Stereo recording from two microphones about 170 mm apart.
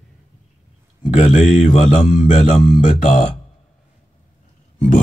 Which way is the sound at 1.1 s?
45° left (ahead or behind).